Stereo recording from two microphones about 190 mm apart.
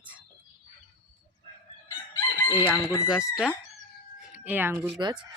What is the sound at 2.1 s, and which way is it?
Chicken, 15° left (ahead or behind).